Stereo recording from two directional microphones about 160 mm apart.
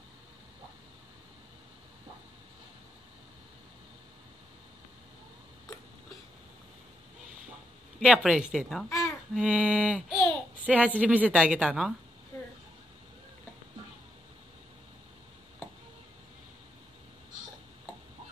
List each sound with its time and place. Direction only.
8.0 s speech: 5° right (ahead or behind)
8.8 s a sound: 15° left (ahead or behind)
9.3 s a woman's voice: 5° right (ahead or behind)
10.0 s babbling: 5° left (ahead or behind)
11.0 s a woman's voice: 10° right (ahead or behind)